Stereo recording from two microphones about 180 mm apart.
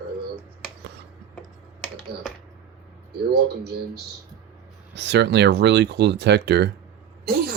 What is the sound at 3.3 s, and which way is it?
Speech, 65° right (ahead or behind).